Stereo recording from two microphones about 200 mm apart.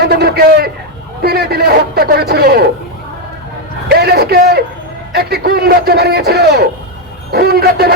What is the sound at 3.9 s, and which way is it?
A man's voice, 50° right (ahead or behind).